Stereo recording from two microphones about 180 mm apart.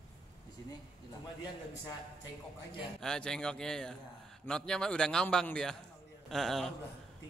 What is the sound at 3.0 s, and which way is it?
A man's voice, 5° left (ahead or behind).